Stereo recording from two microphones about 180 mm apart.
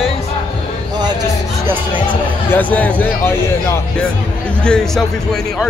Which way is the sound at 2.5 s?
10° left (ahead or behind).